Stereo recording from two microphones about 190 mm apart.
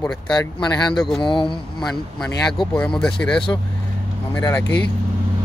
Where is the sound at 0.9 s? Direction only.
5° left (ahead or behind).